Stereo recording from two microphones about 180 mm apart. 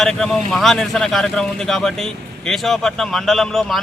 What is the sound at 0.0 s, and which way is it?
Speech, 5° left (ahead or behind).